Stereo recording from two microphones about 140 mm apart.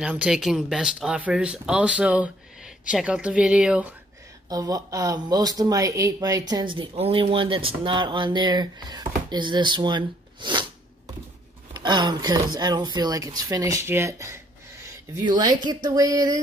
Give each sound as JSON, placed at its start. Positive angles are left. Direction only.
{"t": 0.0, "sound": "speech", "side_deg": -10}
{"t": 4.5, "sound": "speech", "side_deg": -25}
{"t": 11.7, "sound": "speech", "side_deg": -30}
{"t": 15.2, "sound": "speech", "side_deg": -30}